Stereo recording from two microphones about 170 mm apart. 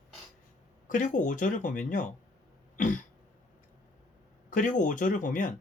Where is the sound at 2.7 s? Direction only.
50° left (ahead or behind).